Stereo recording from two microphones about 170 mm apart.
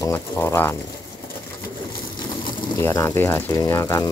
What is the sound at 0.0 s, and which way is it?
Speech, 15° left (ahead or behind).